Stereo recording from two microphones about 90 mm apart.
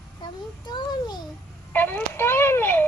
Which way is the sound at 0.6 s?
50° left (ahead or behind).